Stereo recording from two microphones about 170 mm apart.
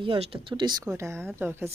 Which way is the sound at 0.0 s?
30° right (ahead or behind).